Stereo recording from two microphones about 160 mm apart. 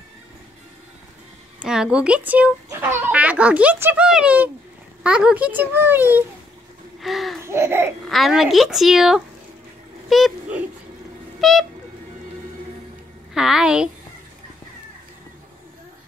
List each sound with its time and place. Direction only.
1.6 s speech: 5° right (ahead or behind)
7.0 s speech: centre (ahead or behind)
7.3 s speech: 15° right (ahead or behind)
8.1 s a woman's voice: centre (ahead or behind)
13.3 s a woman's voice: 5° right (ahead or behind)